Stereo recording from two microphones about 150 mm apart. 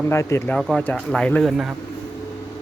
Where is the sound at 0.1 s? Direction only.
20° left (ahead or behind).